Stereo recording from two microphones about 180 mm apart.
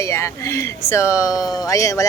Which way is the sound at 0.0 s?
15° left (ahead or behind).